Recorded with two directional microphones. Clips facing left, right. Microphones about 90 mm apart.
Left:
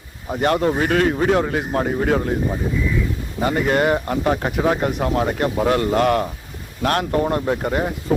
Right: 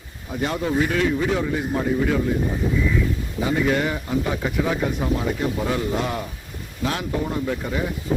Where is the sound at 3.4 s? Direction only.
60° left (ahead or behind).